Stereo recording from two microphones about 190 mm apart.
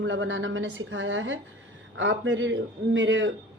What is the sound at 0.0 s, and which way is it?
A woman's voice, 85° right.